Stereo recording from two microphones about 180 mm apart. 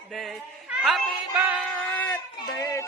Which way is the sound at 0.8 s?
Centre (ahead or behind).